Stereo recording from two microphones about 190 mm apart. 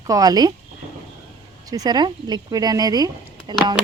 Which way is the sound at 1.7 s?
20° right (ahead or behind).